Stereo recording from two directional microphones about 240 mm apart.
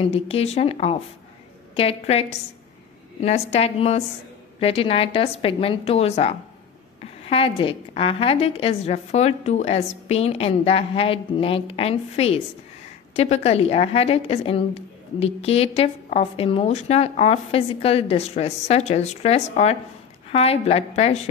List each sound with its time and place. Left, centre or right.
0.0 s a woman's voice: left